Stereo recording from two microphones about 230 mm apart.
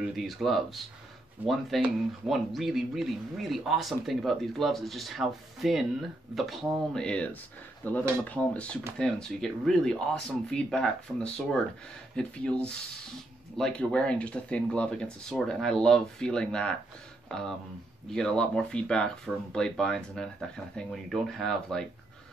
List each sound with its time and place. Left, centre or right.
0.0 s speech: centre